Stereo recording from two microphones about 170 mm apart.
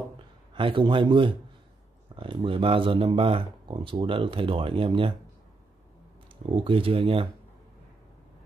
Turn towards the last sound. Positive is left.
turn(degrees=-30)  # may be behind; listen again after turning